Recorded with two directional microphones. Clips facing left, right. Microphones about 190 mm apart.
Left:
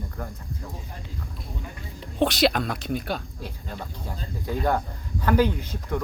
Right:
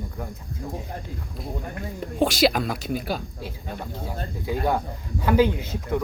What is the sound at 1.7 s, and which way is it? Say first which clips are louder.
Speech: right 8 dB; 55° right (ahead or behind).